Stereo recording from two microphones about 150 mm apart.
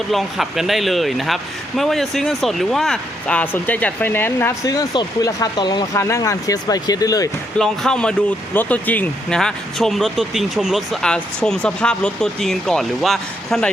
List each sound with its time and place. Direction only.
0.1 s a man's voice: centre (ahead or behind); by 7.3 s 25° left (ahead or behind)
7.6 s a man's voice: 5° left (ahead or behind)